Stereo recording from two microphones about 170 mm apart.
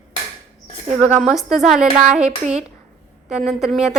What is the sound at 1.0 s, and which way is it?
A woman's voice, 10° right (ahead or behind).